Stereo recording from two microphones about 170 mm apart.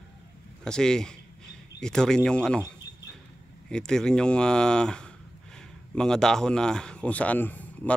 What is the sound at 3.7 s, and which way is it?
A man's voice, 5° left (ahead or behind).